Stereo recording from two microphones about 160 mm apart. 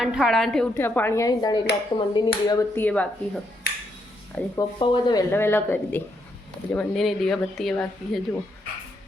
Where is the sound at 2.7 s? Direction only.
10° left (ahead or behind).